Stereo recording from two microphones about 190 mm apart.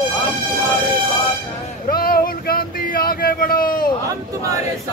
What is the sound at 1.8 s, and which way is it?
Speech, 50° left (ahead or behind).